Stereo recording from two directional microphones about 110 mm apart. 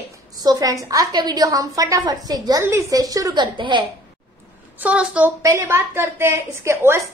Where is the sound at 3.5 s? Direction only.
45° right (ahead or behind).